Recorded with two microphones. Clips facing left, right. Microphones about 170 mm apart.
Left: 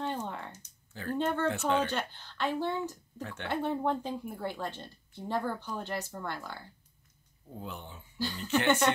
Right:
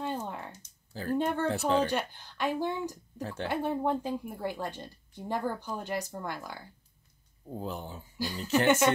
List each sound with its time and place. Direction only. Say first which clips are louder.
0.0 s typing: even; 10° right (ahead or behind)
1.1 s speech: right 1 dB; 10° right (ahead or behind)
1.5 s speech: right 2 dB; 35° right (ahead or behind)
1.9 s speech: right 3 dB; 10° right (ahead or behind)
3.2 s speech: right 5 dB; 35° right (ahead or behind)
3.4 s speech: right 1 dB; 10° right (ahead or behind)
7.5 s speech: right 5 dB; 35° right (ahead or behind)
8.6 s speech: right 2 dB; 10° right (ahead or behind)